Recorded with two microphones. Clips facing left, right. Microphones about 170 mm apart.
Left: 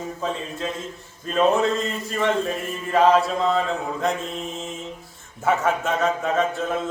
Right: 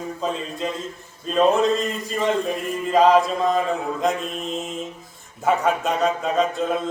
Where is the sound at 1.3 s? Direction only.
15° right (ahead or behind).